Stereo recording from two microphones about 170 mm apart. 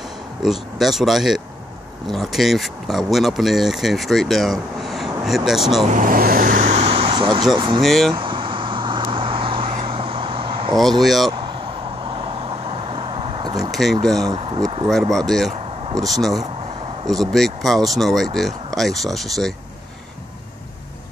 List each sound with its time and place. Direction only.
0.4 s speech: centre (ahead or behind)
5.9 s speech: 55° right (ahead or behind); by 7.8 s 30° right (ahead or behind)
7.8 s speech: centre (ahead or behind)
8.1 s vehicle: 30° right (ahead or behind)
10.8 s speech: centre (ahead or behind)
11.3 s vehicle: 30° right (ahead or behind)
13.7 s a sound: centre (ahead or behind)
14.0 s speech: centre (ahead or behind)
14.3 s speech: 30° right (ahead or behind)
14.9 s speech: centre (ahead or behind)